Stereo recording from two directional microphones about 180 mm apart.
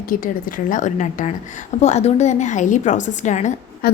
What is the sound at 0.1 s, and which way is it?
A woman's voice, 50° left (ahead or behind).